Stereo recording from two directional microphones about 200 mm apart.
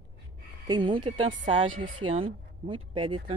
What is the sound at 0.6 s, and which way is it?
A woman's voice, 25° right (ahead or behind).